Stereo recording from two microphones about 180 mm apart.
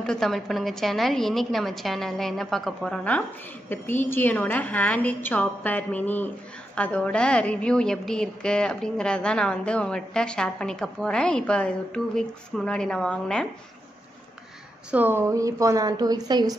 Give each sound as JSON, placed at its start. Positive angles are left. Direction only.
{"t": 0.0, "sound": "a woman's voice", "side_deg": 5}
{"t": 14.9, "sound": "a woman's voice", "side_deg": -10}